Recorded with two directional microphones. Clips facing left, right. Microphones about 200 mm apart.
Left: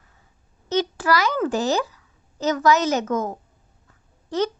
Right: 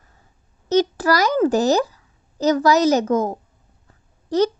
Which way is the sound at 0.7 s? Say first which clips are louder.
Right 4 dB; 40° right (ahead or behind).